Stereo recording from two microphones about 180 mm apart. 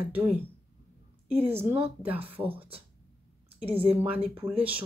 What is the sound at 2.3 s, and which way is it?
Speech, 30° right (ahead or behind).